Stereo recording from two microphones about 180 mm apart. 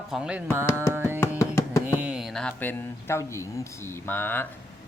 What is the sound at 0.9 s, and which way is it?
Carnatic music, 15° right (ahead or behind).